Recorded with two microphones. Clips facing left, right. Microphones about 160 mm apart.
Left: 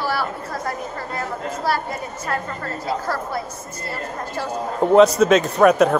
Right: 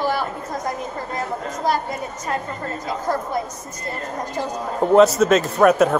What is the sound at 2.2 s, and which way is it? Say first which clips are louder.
Speech: even; 20° right (ahead or behind).